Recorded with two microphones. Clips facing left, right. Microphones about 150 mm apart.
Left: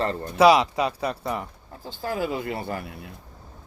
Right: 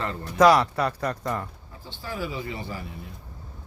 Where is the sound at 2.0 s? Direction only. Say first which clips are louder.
Left 5 dB; 50° left (ahead or behind).